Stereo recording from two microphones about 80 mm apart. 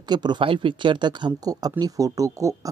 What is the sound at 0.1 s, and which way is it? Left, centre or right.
Speech, right.